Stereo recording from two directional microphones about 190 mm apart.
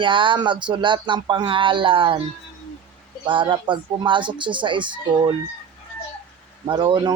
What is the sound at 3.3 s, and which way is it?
A man's voice, 25° right (ahead or behind).